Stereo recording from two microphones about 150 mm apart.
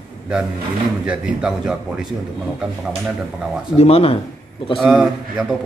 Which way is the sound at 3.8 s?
40° left (ahead or behind).